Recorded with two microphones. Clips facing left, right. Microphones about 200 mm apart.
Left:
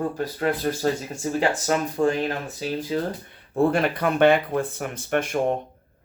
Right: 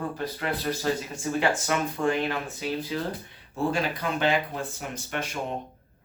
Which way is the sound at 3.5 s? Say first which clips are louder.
Left 6 dB; 55° left (ahead or behind).